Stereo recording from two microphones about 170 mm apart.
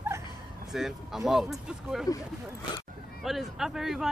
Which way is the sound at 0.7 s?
Centre (ahead or behind).